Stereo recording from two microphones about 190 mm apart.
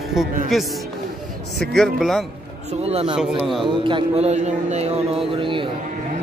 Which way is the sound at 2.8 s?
30° right (ahead or behind).